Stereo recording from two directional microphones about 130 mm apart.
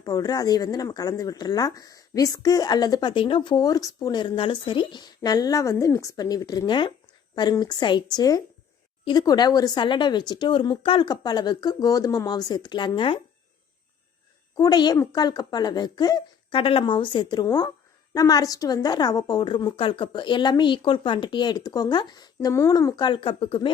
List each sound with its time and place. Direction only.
0.0 s a woman's voice: 30° left (ahead or behind)
14.5 s a woman's voice: 30° left (ahead or behind)